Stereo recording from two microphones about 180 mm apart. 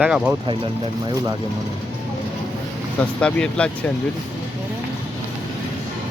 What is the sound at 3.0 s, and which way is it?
Speech, 5° left (ahead or behind).